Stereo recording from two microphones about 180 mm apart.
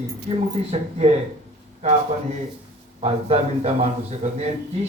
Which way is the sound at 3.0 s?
35° right (ahead or behind).